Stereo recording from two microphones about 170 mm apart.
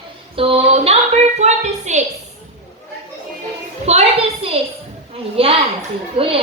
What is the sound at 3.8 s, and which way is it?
A woman's voice, 40° right (ahead or behind).